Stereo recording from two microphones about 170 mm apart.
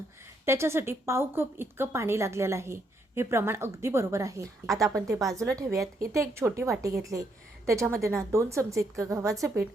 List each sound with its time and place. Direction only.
0.4 s a woman's voice: 15° right (ahead or behind)